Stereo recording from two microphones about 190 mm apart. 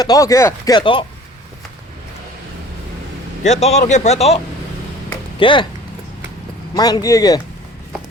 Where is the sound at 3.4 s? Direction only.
35° left (ahead or behind).